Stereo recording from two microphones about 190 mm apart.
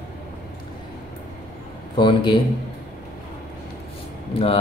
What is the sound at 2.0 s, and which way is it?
Speech, 25° left (ahead or behind).